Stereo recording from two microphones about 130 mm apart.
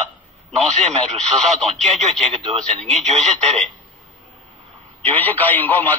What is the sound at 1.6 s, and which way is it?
Speech, centre (ahead or behind).